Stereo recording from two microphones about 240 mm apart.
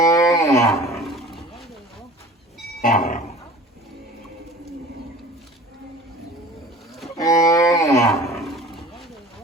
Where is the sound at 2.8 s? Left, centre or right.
Left.